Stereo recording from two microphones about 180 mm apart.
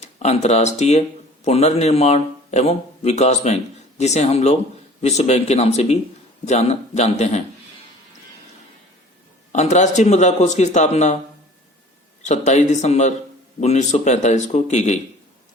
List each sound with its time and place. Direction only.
0.0 s speech: 35° left (ahead or behind)
9.5 s speech: 40° left (ahead or behind)
12.2 s speech: 40° left (ahead or behind)